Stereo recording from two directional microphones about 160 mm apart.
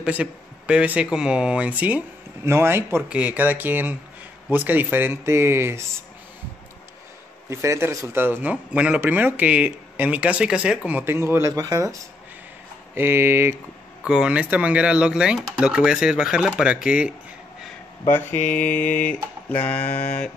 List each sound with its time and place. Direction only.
0.0 s speech: 5° right (ahead or behind)
7.4 s speech: 20° right (ahead or behind)
18.0 s speech: 15° left (ahead or behind)
19.5 s speech: 10° left (ahead or behind)